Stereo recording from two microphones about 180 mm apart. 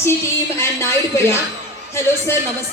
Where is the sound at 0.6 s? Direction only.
15° left (ahead or behind).